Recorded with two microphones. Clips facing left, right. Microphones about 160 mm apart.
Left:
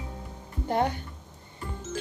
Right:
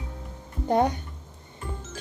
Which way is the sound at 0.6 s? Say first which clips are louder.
Right 4 dB; 20° right (ahead or behind).